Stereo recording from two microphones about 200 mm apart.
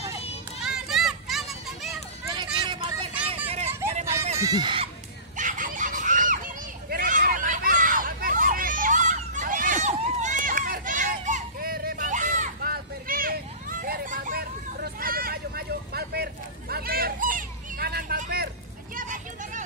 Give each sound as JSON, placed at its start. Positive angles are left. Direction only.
{"t": 0.6, "sound": "children playing", "side_deg": 0}
{"t": 2.2, "sound": "vehicle", "side_deg": -20}
{"t": 4.4, "sound": "speech", "side_deg": -20}
{"t": 5.4, "sound": "a sound", "side_deg": -40}
{"t": 18.9, "sound": "children playing", "side_deg": -40}